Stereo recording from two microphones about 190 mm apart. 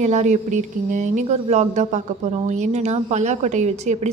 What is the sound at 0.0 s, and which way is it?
Speech, 35° right (ahead or behind).